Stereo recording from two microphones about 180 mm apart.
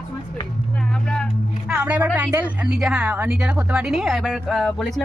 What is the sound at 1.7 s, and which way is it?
Speech, 5° right (ahead or behind).